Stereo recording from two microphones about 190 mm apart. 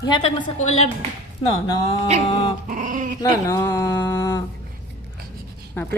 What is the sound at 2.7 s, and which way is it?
Dog, 45° right (ahead or behind).